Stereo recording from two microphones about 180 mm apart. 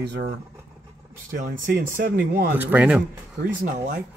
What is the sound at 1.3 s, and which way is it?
Speech, 50° right (ahead or behind).